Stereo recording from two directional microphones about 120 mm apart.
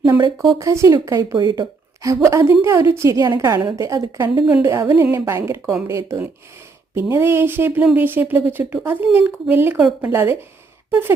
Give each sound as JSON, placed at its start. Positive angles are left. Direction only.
{"t": 0.0, "sound": "a woman's voice", "side_deg": -35}
{"t": 9.7, "sound": "a woman's voice", "side_deg": -5}
{"t": 10.1, "sound": "a woman's voice", "side_deg": -20}